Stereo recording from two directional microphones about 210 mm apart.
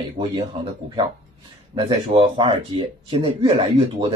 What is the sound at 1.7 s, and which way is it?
Speech, 25° right (ahead or behind).